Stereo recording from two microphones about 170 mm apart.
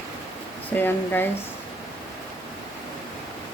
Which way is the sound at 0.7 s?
10° left (ahead or behind).